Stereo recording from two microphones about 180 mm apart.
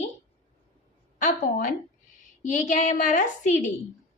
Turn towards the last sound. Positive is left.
turn(degrees=45)  # may be behind; listen again after turning